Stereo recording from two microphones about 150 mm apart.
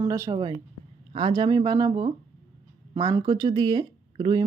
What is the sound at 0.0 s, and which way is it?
Speech, 20° right (ahead or behind).